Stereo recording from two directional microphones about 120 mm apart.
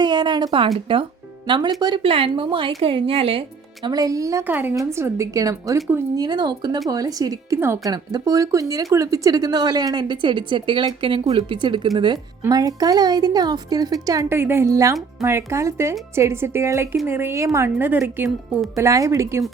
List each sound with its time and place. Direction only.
0.0 s a sound: 35° right (ahead or behind)
0.9 s a woman's voice: 45° right (ahead or behind)
3.8 s speech: 30° right (ahead or behind)
4.4 s a woman's voice: 15° right (ahead or behind)